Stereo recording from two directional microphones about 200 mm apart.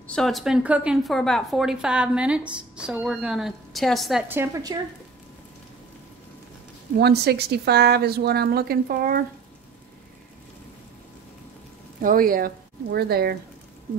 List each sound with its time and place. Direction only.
0.0 s a woman's voice: 5° left (ahead or behind)
4.3 s a woman's voice: 15° right (ahead or behind)
7.0 s speech: 55° right (ahead or behind)
12.0 s speech: 45° right (ahead or behind)